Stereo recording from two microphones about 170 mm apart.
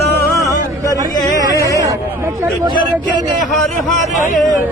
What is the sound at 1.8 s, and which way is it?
Speech, 15° right (ahead or behind).